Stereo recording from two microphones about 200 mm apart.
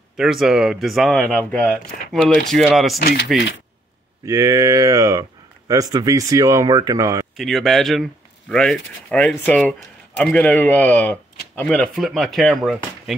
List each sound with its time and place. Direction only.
0.2 s speech: centre (ahead or behind)
3.0 s speech: 50° left (ahead or behind)
4.3 s speech: 15° right (ahead or behind)
7.3 s a man's voice: centre (ahead or behind)